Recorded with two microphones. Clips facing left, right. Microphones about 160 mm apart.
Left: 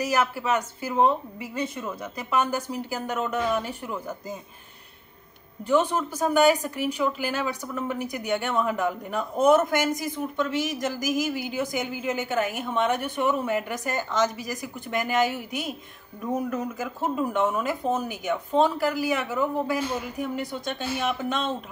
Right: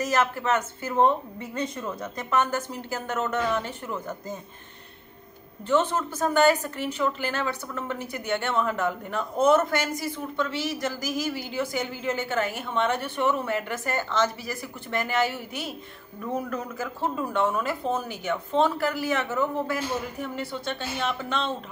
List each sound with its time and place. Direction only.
0.0 s speech: 10° left (ahead or behind)
5.7 s speech: 10° left (ahead or behind)